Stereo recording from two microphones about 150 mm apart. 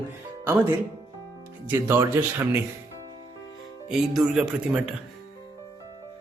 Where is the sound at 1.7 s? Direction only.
15° right (ahead or behind).